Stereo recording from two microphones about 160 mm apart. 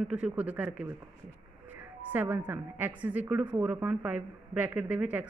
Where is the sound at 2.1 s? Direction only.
15° right (ahead or behind).